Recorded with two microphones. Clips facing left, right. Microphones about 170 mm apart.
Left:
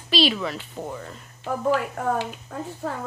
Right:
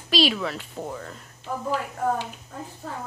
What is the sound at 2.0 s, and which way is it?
A woman's voice, 70° left (ahead or behind).